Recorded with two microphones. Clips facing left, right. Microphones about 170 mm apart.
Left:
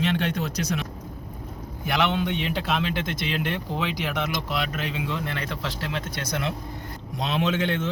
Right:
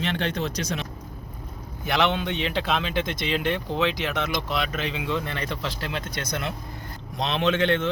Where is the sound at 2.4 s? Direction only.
90° right.